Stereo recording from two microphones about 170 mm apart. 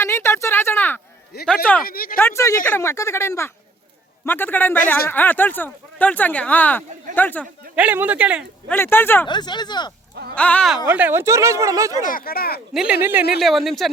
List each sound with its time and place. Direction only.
0.0 s speech: 15° left (ahead or behind)
1.3 s speech: 70° left (ahead or behind)
2.1 s speech: 15° left (ahead or behind)
7.8 s speech: 10° right (ahead or behind)
8.6 s speech: 10° left (ahead or behind)
9.2 s speech: 25° left (ahead or behind)
10.3 s speech: 10° left (ahead or behind)
10.8 s speech: 10° right (ahead or behind)
12.0 s speech: 60° left (ahead or behind)
12.7 s speech: 5° right (ahead or behind)
13.4 s speech: centre (ahead or behind)